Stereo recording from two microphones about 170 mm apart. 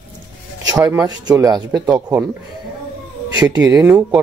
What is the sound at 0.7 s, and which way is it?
Speech, 20° right (ahead or behind).